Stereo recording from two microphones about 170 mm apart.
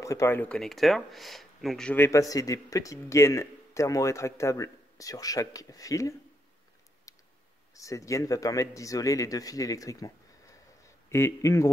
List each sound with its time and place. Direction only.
0.0 s speech: 20° left (ahead or behind)
7.1 s tick: 20° left (ahead or behind)
7.7 s speech: 20° left (ahead or behind)